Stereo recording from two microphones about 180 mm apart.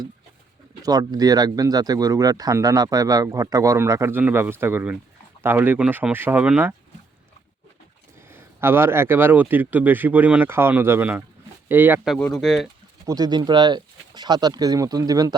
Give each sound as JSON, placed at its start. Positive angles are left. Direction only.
{"t": 0.8, "sound": "speech", "side_deg": -20}
{"t": 8.2, "sound": "speech", "side_deg": -15}
{"t": 12.1, "sound": "speech", "side_deg": 5}
{"t": 13.1, "sound": "speech", "side_deg": -20}